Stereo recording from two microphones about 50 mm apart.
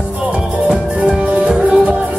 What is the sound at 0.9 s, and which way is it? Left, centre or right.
Music, right.